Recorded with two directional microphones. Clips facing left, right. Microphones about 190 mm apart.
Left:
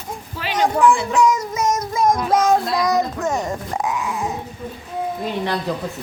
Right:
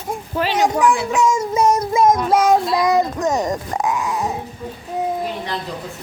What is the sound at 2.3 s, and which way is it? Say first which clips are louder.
Child singing: right 2 dB; 10° right (ahead or behind).